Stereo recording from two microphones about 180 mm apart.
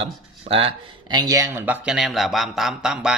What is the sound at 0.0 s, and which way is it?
A man's voice, 30° right (ahead or behind).